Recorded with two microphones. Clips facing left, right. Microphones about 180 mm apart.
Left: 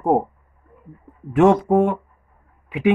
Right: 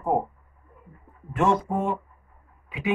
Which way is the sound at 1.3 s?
70° left (ahead or behind).